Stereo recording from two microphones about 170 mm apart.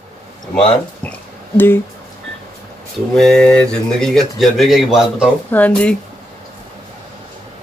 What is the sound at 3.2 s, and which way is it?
Speech, 5° left (ahead or behind).